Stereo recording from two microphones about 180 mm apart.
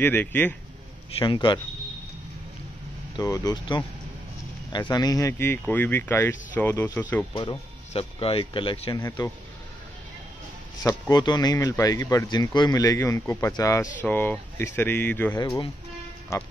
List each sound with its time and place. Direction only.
0.0 s speech: 10° left (ahead or behind)
1.2 s speech: 25° left (ahead or behind)
3.2 s speech: 20° left (ahead or behind)
7.3 s speech: 30° left (ahead or behind)
9.0 s speech: 15° left (ahead or behind)
10.8 s speech: 20° left (ahead or behind)
15.3 s speech: 20° left (ahead or behind)